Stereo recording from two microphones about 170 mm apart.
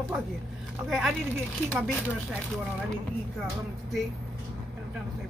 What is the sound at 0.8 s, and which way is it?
Speech, centre (ahead or behind).